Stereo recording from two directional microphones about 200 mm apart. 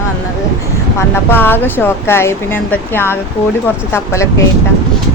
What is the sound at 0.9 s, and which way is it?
Speech, 10° left (ahead or behind).